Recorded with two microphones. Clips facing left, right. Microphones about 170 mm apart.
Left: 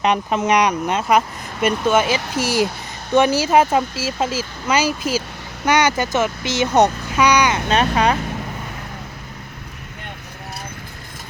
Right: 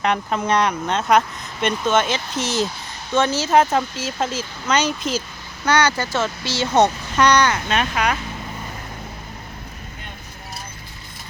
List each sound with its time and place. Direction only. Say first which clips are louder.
0.0 s speech: left 3 dB; 20° left (ahead or behind)
5.6 s speech: left 2 dB; 20° left (ahead or behind)
7.7 s speech: left 4 dB; 35° left (ahead or behind)